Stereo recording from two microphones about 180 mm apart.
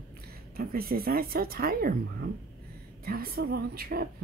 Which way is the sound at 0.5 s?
55° right (ahead or behind).